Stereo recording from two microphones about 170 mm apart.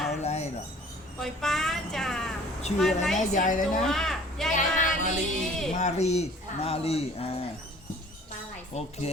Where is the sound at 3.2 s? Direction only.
50° left (ahead or behind).